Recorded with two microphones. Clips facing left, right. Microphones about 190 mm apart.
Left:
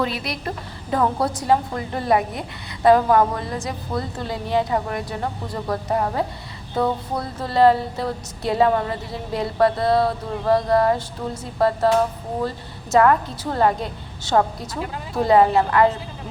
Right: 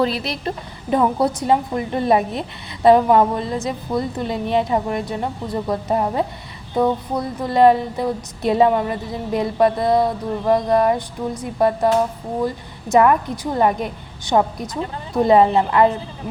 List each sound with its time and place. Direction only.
0.0 s a woman's voice: 30° right (ahead or behind)